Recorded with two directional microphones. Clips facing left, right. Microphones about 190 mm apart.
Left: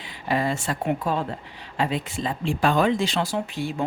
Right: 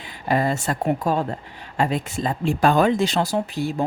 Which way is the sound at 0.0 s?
45° right (ahead or behind).